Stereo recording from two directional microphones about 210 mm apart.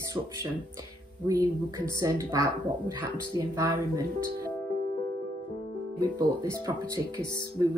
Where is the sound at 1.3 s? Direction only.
15° right (ahead or behind).